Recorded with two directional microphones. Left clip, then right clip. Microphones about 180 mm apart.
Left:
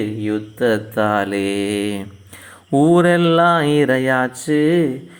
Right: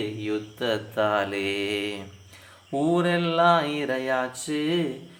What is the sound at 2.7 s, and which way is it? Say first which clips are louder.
Speech: left 10 dB; 40° left (ahead or behind).